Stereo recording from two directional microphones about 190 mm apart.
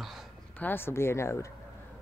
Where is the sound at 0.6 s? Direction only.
10° left (ahead or behind).